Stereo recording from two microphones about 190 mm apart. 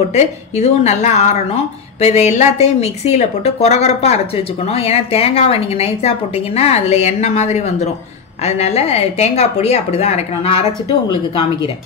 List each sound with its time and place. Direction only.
0.1 s a woman's voice: 35° left (ahead or behind)